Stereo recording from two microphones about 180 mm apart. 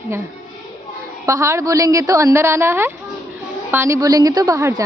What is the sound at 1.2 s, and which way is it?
A woman's voice, 15° right (ahead or behind).